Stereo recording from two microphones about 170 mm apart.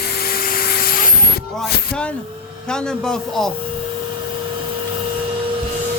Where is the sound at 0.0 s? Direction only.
65° left (ahead or behind).